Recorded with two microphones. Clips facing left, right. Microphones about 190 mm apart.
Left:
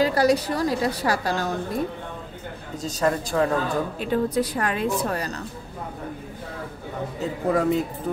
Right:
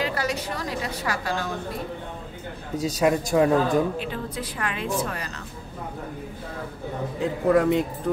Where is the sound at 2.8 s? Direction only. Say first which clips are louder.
Right 2 dB; 10° right (ahead or behind).